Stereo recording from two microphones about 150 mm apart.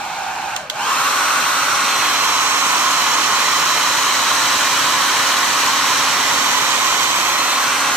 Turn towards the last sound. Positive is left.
turn(degrees=0)  # may be behind; listen again after turning